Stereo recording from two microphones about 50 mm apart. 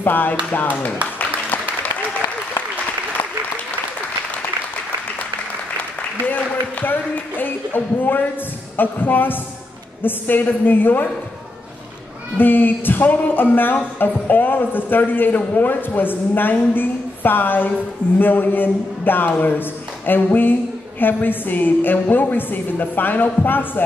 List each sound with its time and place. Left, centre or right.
0.0 s speech: left
6.2 s speech: left
12.4 s speech: left